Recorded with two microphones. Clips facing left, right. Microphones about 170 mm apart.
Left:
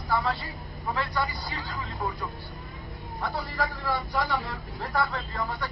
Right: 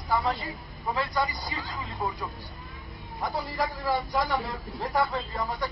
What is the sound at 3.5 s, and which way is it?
Speech, 15° right (ahead or behind).